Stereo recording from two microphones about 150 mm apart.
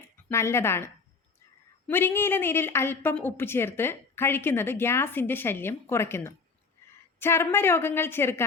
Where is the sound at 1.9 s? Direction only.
15° left (ahead or behind).